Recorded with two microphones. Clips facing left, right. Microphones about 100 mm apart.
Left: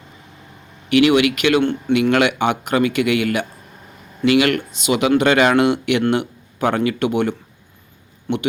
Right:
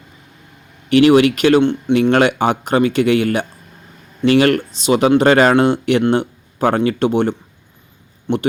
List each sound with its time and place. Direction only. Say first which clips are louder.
0.9 s speech: right 4 dB; 35° right (ahead or behind)